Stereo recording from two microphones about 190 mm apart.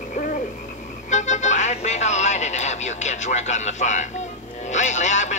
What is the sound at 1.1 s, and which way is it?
Music, 40° left (ahead or behind).